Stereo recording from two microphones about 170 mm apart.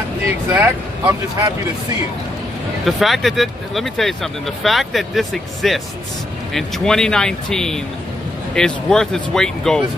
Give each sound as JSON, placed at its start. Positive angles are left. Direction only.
{"t": 0.5, "sound": "speech", "side_deg": -15}
{"t": 2.8, "sound": "speech", "side_deg": 0}